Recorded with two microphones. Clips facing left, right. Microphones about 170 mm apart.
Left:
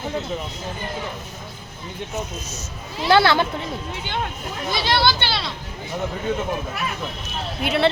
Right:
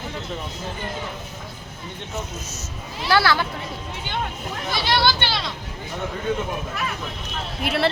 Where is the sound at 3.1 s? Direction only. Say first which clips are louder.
Left 4 dB; 20° left (ahead or behind).